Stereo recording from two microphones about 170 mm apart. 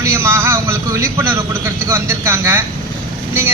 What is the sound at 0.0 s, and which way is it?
A man's voice, 15° right (ahead or behind).